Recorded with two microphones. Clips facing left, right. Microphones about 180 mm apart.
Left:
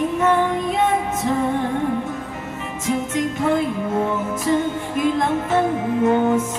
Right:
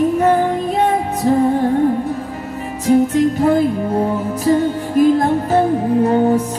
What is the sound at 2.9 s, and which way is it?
Music, 35° right (ahead or behind).